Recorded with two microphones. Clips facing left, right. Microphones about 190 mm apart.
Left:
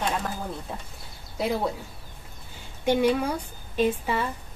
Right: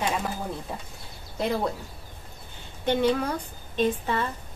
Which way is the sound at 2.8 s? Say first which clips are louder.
Left 1 dB; 10° left (ahead or behind).